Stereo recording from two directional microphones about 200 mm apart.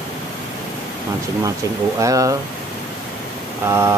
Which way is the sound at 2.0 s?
15° right (ahead or behind).